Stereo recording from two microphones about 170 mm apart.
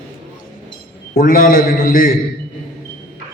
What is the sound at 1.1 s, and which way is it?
A man's voice, 55° left (ahead or behind).